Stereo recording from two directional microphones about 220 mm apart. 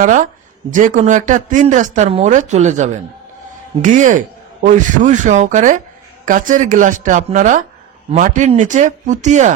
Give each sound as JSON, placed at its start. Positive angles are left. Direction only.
{"t": 0.0, "sound": "speech", "side_deg": -35}